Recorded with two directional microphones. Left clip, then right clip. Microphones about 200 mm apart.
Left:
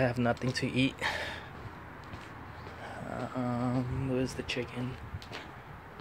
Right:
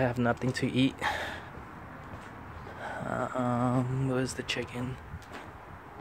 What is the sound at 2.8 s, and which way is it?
Speech, 20° right (ahead or behind).